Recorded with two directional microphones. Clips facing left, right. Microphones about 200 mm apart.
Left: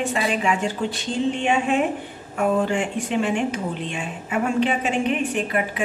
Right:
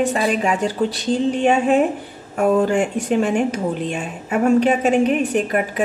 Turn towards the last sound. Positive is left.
turn(degrees=-40)  # may be behind; listen again after turning